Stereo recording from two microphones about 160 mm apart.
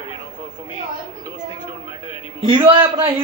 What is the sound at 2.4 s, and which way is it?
Speech, 30° right (ahead or behind).